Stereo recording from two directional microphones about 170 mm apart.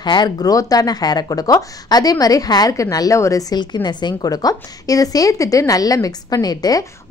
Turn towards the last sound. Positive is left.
turn(degrees=20)  # may be behind; listen again after turning